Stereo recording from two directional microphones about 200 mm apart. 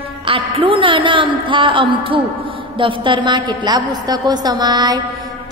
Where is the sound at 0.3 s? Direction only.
25° right (ahead or behind).